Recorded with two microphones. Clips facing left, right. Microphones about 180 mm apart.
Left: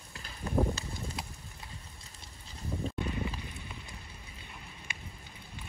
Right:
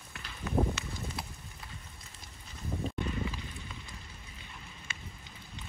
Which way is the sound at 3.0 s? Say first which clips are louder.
Even; 15° left (ahead or behind).